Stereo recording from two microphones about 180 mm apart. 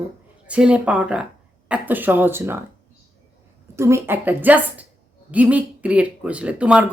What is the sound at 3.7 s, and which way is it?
A woman's voice, 15° right (ahead or behind).